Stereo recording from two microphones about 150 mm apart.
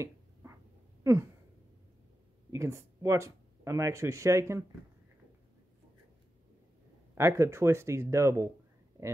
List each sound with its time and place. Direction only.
0.0 s finger snapping: 20° right (ahead or behind)
2.5 s speech: 20° right (ahead or behind)
7.2 s speech: 20° right (ahead or behind)